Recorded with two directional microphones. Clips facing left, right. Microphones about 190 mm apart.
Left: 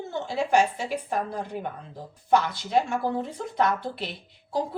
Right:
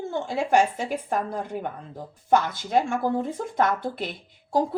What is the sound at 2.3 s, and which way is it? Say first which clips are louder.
Speech: right 1 dB; 50° right (ahead or behind).